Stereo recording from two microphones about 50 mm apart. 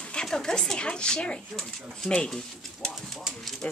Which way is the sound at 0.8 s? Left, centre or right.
Centre.